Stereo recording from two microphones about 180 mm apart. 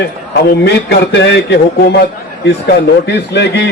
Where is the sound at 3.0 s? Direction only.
70° left (ahead or behind).